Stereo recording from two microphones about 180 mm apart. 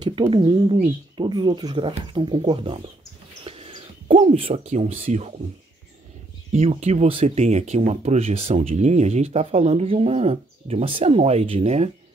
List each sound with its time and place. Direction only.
0.3 s speech: 25° right (ahead or behind)
6.6 s speech: 35° right (ahead or behind)